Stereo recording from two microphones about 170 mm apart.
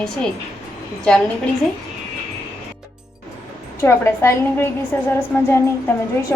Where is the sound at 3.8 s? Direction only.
15° left (ahead or behind).